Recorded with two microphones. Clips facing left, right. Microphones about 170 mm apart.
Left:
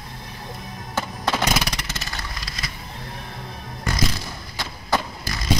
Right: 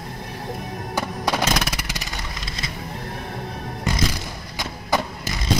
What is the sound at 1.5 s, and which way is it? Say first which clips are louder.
Vehicle: right 1 dB; centre (ahead or behind).